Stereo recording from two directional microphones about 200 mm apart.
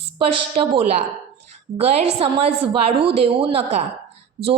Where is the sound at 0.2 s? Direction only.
25° right (ahead or behind).